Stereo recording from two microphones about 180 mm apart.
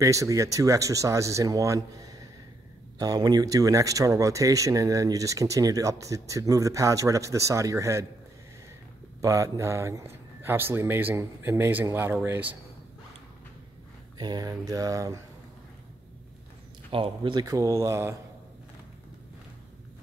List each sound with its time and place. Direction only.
0.0 s speech: 20° right (ahead or behind)
9.2 s speech: 15° right (ahead or behind)
14.1 s speech: 25° right (ahead or behind)
16.9 s speech: 30° right (ahead or behind)